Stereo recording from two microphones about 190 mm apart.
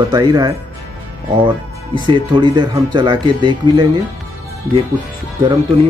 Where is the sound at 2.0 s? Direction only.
25° right (ahead or behind).